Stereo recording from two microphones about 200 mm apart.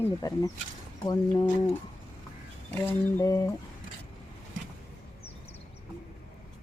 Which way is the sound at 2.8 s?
15° left (ahead or behind).